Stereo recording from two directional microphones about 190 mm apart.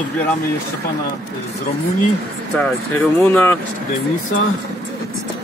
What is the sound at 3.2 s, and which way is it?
Speech, 10° left (ahead or behind).